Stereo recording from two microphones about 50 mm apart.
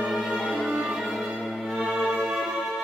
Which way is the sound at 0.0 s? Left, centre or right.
Centre.